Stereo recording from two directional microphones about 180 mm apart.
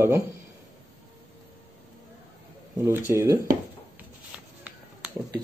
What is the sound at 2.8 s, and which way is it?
Speech, 15° right (ahead or behind).